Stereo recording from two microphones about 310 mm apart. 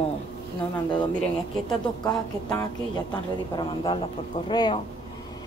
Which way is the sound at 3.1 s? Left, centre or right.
Centre.